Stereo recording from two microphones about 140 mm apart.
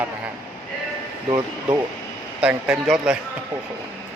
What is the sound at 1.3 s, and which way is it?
Speech, 15° right (ahead or behind).